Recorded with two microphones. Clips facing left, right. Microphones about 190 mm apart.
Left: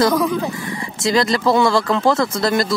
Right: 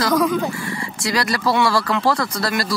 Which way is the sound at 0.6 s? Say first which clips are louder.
Left 1 dB; 20° left (ahead or behind).